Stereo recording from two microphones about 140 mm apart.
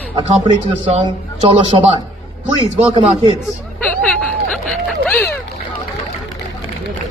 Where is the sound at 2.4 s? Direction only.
45° right (ahead or behind).